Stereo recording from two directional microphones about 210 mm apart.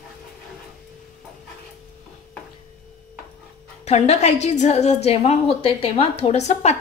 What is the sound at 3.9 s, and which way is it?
A woman's voice, 30° left (ahead or behind).